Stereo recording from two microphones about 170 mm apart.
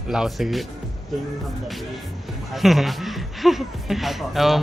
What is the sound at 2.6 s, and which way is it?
Speech, centre (ahead or behind).